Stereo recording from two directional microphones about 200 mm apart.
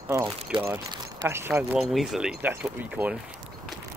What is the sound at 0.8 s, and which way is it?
Speech, 15° right (ahead or behind).